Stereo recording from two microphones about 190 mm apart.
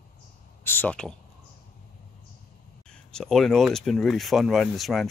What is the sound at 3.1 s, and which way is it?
Speech, 5° left (ahead or behind).